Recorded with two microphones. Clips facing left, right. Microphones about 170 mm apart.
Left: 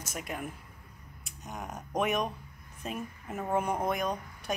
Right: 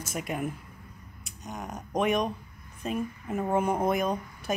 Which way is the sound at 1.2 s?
5° left (ahead or behind).